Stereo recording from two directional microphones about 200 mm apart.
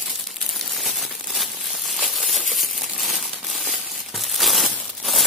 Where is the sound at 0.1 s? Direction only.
Centre (ahead or behind).